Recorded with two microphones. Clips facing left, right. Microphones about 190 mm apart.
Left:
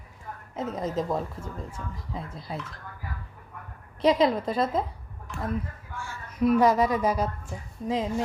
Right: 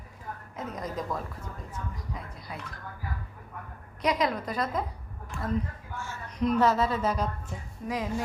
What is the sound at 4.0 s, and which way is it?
Speech, 30° left (ahead or behind).